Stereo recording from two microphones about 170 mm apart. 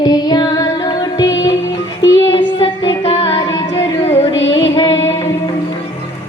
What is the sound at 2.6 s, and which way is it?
Music, 35° left (ahead or behind).